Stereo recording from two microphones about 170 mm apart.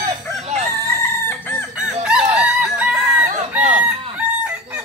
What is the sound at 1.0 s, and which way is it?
Chicken, 10° left (ahead or behind).